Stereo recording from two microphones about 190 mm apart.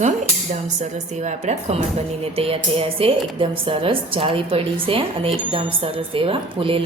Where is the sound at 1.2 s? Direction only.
35° right (ahead or behind).